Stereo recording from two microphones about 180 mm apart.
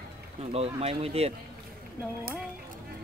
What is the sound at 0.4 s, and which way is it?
Speech, 35° right (ahead or behind).